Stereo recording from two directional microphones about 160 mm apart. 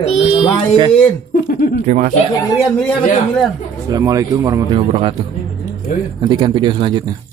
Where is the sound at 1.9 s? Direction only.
50° right (ahead or behind).